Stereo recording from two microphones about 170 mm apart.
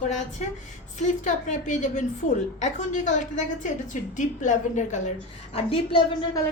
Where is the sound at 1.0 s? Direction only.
45° left (ahead or behind).